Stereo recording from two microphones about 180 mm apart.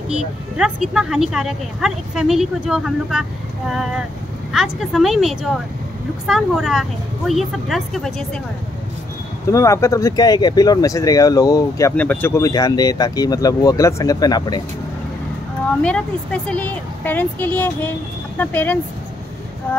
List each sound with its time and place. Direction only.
0.6 s a woman's voice: 5° right (ahead or behind)
9.5 s speech: 15° left (ahead or behind)
15.8 s speech: 5° left (ahead or behind)